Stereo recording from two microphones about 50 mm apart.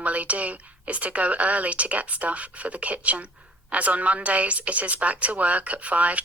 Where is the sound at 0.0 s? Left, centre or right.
Right.